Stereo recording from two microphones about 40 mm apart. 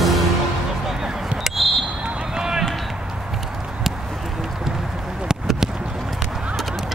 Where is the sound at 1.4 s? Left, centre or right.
Centre.